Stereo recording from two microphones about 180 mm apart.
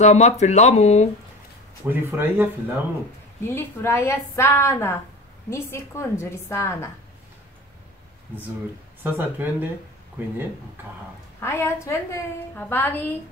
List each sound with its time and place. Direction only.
0.0 s speech: 40° left (ahead or behind)
1.9 s speech: 10° right (ahead or behind)
3.4 s a woman's voice: 15° left (ahead or behind)
9.0 s speech: 10° right (ahead or behind)
11.3 s a woman's voice: 15° left (ahead or behind)